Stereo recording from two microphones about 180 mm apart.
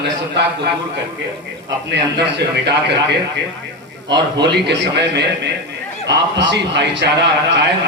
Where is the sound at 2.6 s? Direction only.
70° right (ahead or behind).